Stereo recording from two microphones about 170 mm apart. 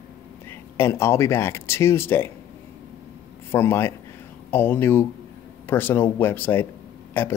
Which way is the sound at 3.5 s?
15° left (ahead or behind).